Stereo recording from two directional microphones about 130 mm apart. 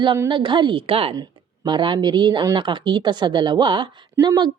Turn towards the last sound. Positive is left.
turn(degrees=-35)  # may be behind; listen again after turning